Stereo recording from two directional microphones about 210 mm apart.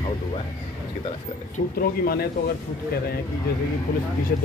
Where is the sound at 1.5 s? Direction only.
45° left (ahead or behind).